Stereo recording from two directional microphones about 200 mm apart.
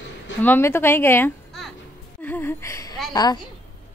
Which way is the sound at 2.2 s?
10° left (ahead or behind).